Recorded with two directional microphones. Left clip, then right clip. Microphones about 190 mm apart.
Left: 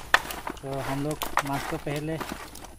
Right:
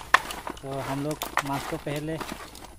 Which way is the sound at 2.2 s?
15° left (ahead or behind).